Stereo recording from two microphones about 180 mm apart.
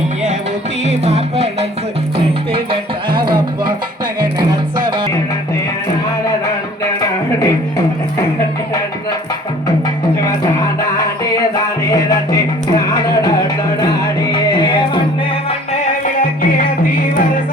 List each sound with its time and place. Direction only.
0.9 s music: 35° right (ahead or behind)
3.1 s music: 25° right (ahead or behind)
7.0 s a sound: 20° left (ahead or behind)
11.9 s music: 20° left (ahead or behind)
14.3 s music: 25° left (ahead or behind)
15.7 s music: 45° left (ahead or behind)